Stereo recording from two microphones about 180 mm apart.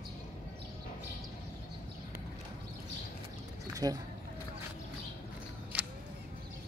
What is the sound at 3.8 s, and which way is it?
Speech, 20° right (ahead or behind).